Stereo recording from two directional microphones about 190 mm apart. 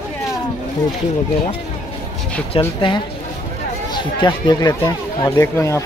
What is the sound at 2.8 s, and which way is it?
Speech, 25° left (ahead or behind).